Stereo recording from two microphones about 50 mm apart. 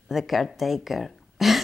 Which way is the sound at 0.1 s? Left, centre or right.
Centre.